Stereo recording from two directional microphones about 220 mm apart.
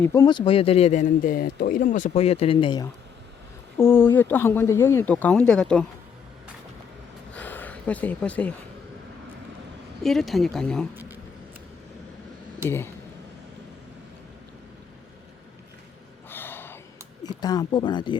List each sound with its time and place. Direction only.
0.0 s speech: 15° left (ahead or behind)
3.8 s speech: 10° left (ahead or behind)
7.3 s a sound: 10° left (ahead or behind)
10.0 s speech: centre (ahead or behind)
12.6 s speech: 10° left (ahead or behind)
16.3 s gasp: 10° left (ahead or behind)
17.2 s speech: 15° left (ahead or behind)